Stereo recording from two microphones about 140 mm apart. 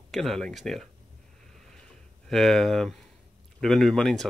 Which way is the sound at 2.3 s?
5° left (ahead or behind).